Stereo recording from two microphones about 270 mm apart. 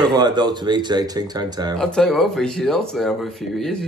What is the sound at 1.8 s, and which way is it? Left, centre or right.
Speech, centre.